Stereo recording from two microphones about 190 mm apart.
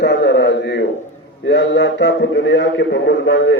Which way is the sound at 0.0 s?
65° left (ahead or behind).